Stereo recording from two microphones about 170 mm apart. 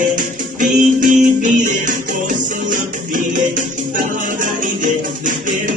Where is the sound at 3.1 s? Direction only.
50° right (ahead or behind).